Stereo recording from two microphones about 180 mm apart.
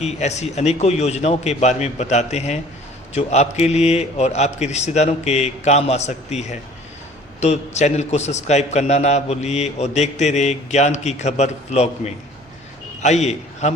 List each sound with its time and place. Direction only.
0.0 s a man's voice: 40° left (ahead or behind)